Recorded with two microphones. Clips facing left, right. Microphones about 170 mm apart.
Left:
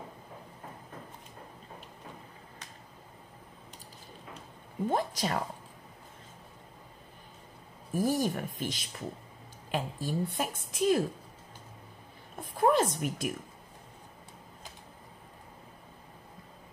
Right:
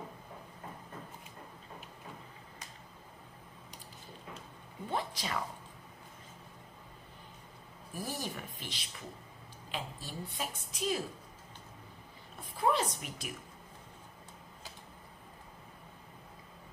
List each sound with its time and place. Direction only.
4.8 s a woman's voice: 45° left (ahead or behind)
7.9 s a woman's voice: 45° left (ahead or behind)
12.4 s a woman's voice: 50° left (ahead or behind)